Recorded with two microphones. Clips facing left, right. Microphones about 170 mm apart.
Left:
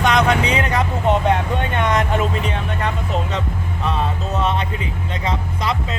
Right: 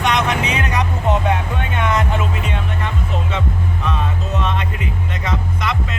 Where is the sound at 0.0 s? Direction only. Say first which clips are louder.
Left 2 dB; 30° left (ahead or behind).